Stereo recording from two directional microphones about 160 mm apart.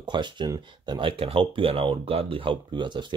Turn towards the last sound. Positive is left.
turn(degrees=-30)  # may be behind; listen again after turning